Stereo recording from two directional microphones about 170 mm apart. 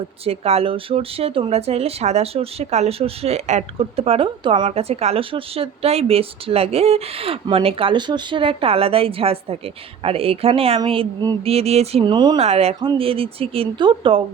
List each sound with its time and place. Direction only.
0.3 s speech: 35° right (ahead or behind)